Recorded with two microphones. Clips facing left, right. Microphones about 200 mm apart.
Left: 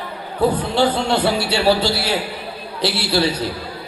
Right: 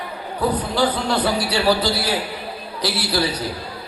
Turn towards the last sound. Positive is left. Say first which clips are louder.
# left 3 dB
turn(degrees=30)  # may be behind; listen again after turning